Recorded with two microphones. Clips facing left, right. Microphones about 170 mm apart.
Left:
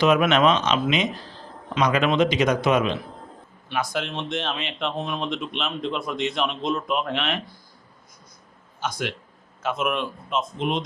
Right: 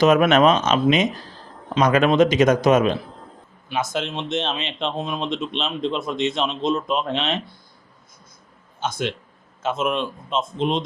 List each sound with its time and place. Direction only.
0.0 s a man's voice: 45° right (ahead or behind)
3.7 s speech: 20° right (ahead or behind)
8.8 s speech: 25° right (ahead or behind)